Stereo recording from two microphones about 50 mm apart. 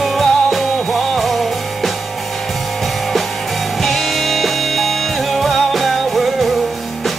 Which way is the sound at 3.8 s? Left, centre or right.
Centre.